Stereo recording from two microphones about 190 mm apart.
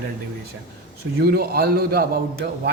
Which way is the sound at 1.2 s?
55° right (ahead or behind).